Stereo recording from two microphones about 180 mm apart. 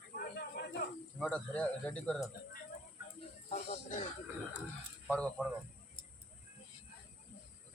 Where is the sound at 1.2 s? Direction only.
5° left (ahead or behind).